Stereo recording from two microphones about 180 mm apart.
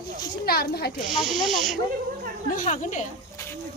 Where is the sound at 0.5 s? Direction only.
60° left (ahead or behind).